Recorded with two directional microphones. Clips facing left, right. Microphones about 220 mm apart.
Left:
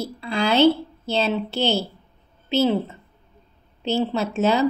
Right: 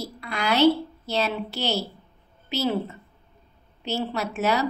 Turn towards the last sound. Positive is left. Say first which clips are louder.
# left 4 dB
turn(degrees=25)  # may be behind; listen again after turning